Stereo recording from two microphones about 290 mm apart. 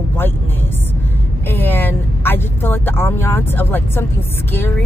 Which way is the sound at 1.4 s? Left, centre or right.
Centre.